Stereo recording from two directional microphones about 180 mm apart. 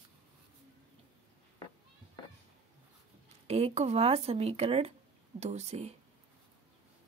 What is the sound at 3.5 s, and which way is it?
Speech, 35° right (ahead or behind).